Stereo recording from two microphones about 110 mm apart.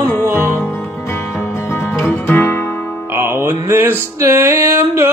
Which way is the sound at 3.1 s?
20° right (ahead or behind).